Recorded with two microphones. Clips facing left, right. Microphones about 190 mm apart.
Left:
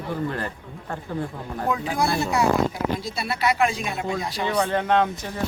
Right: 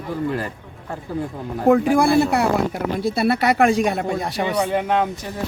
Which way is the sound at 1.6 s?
55° right (ahead or behind).